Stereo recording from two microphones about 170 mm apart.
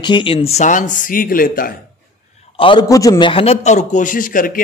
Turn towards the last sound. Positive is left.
turn(degrees=55)  # may be behind; listen again after turning